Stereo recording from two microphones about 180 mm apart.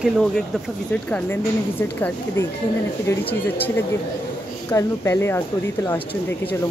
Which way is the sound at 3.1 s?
15° left (ahead or behind).